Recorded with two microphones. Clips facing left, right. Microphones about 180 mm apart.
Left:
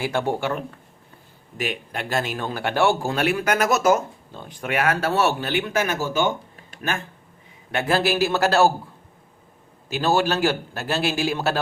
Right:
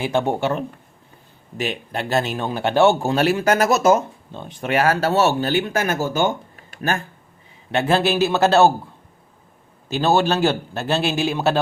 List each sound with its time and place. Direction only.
0.0 s speech: 20° right (ahead or behind); by 6.3 s 45° right (ahead or behind)
7.7 s speech: 25° right (ahead or behind)
9.9 s speech: 25° right (ahead or behind)